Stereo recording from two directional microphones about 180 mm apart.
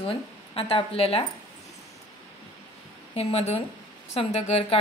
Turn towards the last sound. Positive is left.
turn(degrees=35)  # may be behind; listen again after turning